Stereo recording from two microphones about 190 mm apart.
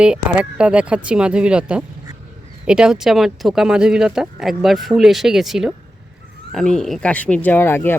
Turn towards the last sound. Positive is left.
turn(degrees=10)  # may be behind; listen again after turning